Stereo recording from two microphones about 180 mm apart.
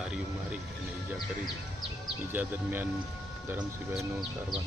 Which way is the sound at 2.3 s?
10° right (ahead or behind).